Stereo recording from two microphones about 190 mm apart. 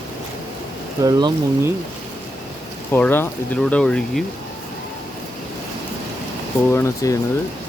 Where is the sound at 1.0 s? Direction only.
20° right (ahead or behind).